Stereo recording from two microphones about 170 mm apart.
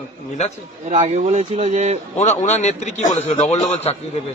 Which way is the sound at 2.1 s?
45° left (ahead or behind).